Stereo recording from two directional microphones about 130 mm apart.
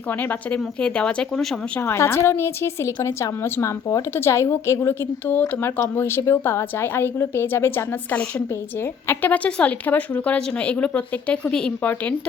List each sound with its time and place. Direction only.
0.1 s a woman's voice: 15° left (ahead or behind)
1.8 s a woman's voice: 20° left (ahead or behind)